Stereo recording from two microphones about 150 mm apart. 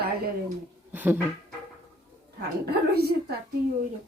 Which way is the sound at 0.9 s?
10° right (ahead or behind).